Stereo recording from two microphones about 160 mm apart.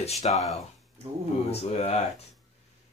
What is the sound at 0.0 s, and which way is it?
Speech, 40° left (ahead or behind).